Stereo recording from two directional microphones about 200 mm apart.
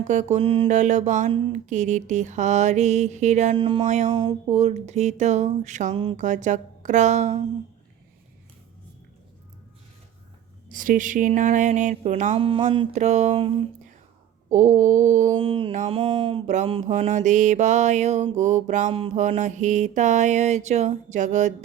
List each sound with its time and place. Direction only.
0.1 s mantra: 35° right (ahead or behind)
1.3 s mantra: 25° right (ahead or behind)
1.5 s mantra: 40° right (ahead or behind)
4.1 s mantra: 20° right (ahead or behind)
10.7 s mantra: 40° right (ahead or behind)